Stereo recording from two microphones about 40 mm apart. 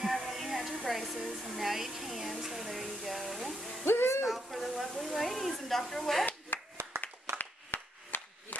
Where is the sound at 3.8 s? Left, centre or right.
Left.